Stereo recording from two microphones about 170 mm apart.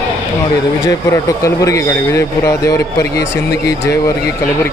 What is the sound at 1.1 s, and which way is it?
A man's voice, 20° left (ahead or behind).